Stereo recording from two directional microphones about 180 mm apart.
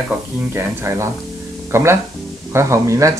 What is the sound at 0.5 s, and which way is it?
Speech, 15° right (ahead or behind).